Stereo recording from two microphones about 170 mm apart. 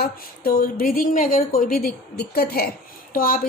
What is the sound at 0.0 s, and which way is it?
Speech, 60° left (ahead or behind).